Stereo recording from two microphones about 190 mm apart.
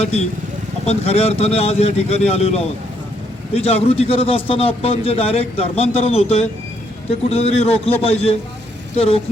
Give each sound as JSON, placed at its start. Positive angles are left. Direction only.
{"t": 0.9, "sound": "a man's voice", "side_deg": 30}